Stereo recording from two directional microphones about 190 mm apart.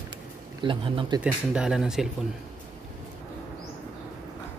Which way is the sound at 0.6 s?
25° right (ahead or behind).